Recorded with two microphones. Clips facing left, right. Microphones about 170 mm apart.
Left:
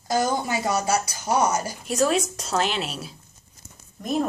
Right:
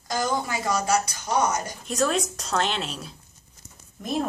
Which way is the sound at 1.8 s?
5° left (ahead or behind).